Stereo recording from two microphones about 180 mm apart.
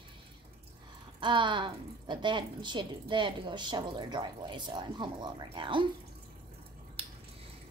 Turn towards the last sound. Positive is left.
turn(degrees=-30)  # may be behind; listen again after turning